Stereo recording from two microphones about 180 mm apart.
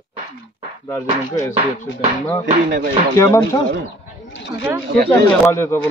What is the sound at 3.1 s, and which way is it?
Speech, 15° left (ahead or behind).